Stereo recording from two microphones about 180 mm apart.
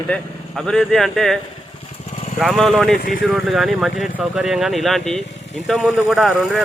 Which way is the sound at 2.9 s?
45° left (ahead or behind).